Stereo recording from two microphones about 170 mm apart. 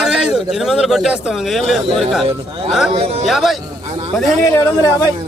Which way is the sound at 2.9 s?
35° right (ahead or behind).